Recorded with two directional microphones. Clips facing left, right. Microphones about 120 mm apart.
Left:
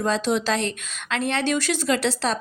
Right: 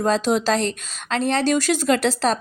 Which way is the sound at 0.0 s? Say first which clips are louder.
Right 3 dB; 45° right (ahead or behind).